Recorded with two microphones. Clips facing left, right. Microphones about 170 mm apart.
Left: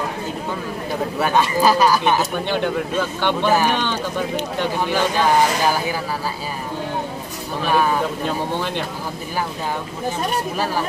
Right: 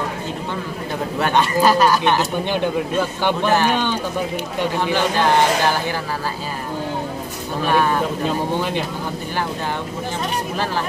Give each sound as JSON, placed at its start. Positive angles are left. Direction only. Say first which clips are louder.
{"t": 1.2, "sound": "speech", "louder": "right 1 dB", "side_deg": 5}
{"t": 2.5, "sound": "speech", "louder": "right 1 dB", "side_deg": -10}
{"t": 3.4, "sound": "speech", "louder": "even", "side_deg": 10}
{"t": 3.7, "sound": "speech", "louder": "right 2 dB", "side_deg": -10}
{"t": 7.7, "sound": "speech", "louder": "even", "side_deg": 5}
{"t": 8.5, "sound": "speech", "louder": "right 2 dB", "side_deg": -10}